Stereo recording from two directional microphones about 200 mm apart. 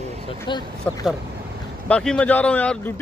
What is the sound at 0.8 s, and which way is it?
A man's voice, 5° left (ahead or behind).